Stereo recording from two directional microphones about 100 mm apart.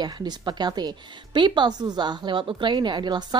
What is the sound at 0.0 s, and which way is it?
A woman's voice, 45° right (ahead or behind).